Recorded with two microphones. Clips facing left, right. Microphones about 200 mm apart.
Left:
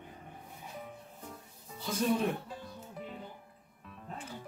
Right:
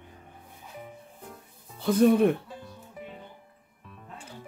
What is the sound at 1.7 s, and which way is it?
Speech, 55° right (ahead or behind).